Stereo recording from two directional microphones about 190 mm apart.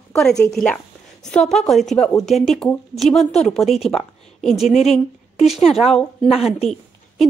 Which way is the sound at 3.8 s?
30° left (ahead or behind).